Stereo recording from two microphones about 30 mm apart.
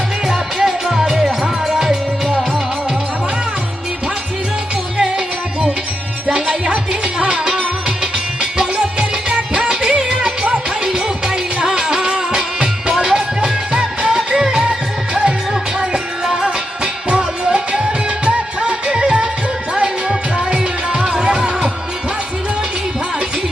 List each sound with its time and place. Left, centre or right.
0.3 s music: centre
5.0 s music: right
14.6 s music: right
16.2 s music: centre
16.8 s music: right